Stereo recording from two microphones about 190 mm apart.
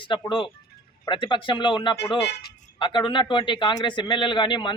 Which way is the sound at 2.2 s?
65° left (ahead or behind).